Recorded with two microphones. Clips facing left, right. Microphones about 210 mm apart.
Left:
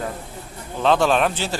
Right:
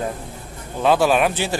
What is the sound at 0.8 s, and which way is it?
Speech, 10° right (ahead or behind).